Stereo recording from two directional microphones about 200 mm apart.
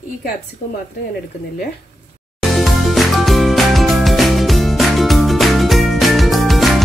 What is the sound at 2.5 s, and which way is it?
Music, centre (ahead or behind).